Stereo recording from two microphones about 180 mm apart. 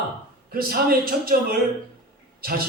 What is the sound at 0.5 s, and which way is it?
Mantra, 55° right (ahead or behind).